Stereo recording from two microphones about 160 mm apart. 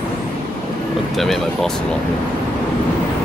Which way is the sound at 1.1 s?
Centre (ahead or behind).